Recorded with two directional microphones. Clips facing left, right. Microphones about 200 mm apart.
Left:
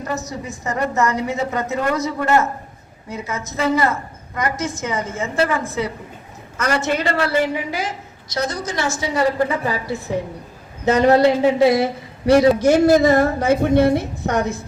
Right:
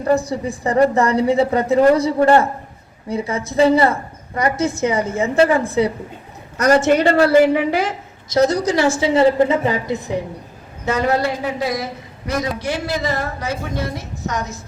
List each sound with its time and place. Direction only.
0.0 s a woman's voice: 30° right (ahead or behind)
7.1 s a woman's voice: 30° right (ahead or behind)
7.5 s a woman's voice: 60° right (ahead or behind)
8.3 s a woman's voice: 45° right (ahead or behind)
8.7 s a woman's voice: 30° right (ahead or behind)
10.8 s a woman's voice: 20° left (ahead or behind)
12.5 s a woman's voice: 45° left (ahead or behind)